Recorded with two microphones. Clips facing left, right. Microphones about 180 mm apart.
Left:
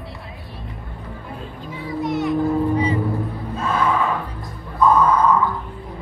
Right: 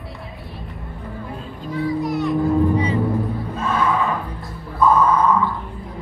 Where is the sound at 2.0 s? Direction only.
Centre (ahead or behind).